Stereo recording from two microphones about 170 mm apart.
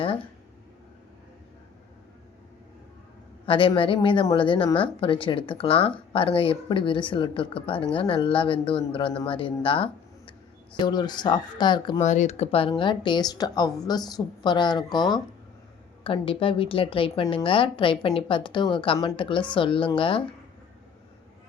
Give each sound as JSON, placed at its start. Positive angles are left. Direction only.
{"t": 3.4, "sound": "a woman's voice", "side_deg": 30}
{"t": 11.9, "sound": "a woman's voice", "side_deg": 45}